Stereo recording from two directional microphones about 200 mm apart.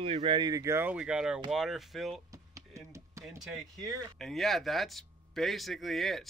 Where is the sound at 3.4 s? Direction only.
Centre (ahead or behind).